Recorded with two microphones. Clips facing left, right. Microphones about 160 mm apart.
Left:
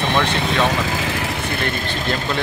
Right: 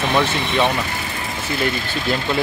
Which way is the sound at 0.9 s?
90° left.